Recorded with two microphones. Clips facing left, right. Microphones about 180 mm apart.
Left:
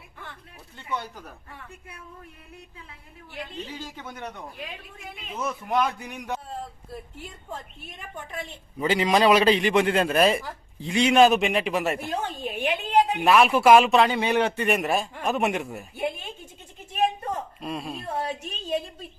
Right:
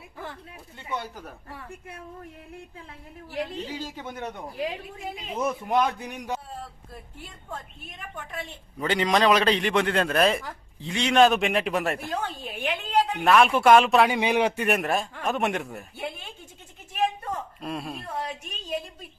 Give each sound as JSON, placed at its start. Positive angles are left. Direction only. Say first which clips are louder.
{"t": 3.9, "sound": "a man's voice", "louder": "right 2 dB", "side_deg": -25}
{"t": 5.6, "sound": "a man's voice", "louder": "left 1 dB", "side_deg": -20}
{"t": 8.8, "sound": "a man's voice", "louder": "left 2 dB", "side_deg": 5}
{"t": 11.9, "sound": "speech", "louder": "left 1 dB", "side_deg": 20}
{"t": 13.2, "sound": "a man's voice", "louder": "even", "side_deg": 0}
{"t": 14.0, "sound": "a man's voice", "louder": "even", "side_deg": -10}
{"t": 14.8, "sound": "a man's voice", "louder": "left 1 dB", "side_deg": 5}
{"t": 16.0, "sound": "a sound", "louder": "left 7 dB", "side_deg": 15}
{"t": 17.6, "sound": "a man's voice", "louder": "left 1 dB", "side_deg": 0}
{"t": 18.0, "sound": "a woman's voice", "louder": "left 3 dB", "side_deg": 35}